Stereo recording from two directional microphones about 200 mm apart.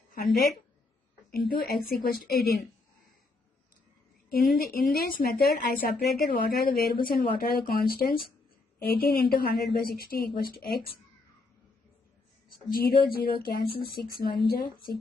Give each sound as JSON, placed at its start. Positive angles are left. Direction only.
{"t": 1.3, "sound": "a woman's voice", "side_deg": 50}
{"t": 4.3, "sound": "a woman's voice", "side_deg": 50}
{"t": 12.7, "sound": "a woman's voice", "side_deg": 50}